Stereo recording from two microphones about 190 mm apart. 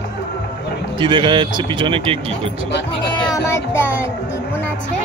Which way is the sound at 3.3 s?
15° left (ahead or behind).